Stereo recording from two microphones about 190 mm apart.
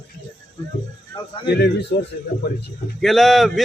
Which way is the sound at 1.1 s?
25° left (ahead or behind).